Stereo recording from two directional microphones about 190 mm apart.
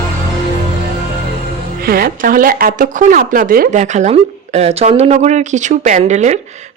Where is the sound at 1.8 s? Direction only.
55° right (ahead or behind).